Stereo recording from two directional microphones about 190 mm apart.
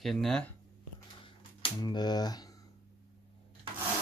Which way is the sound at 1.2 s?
25° left (ahead or behind).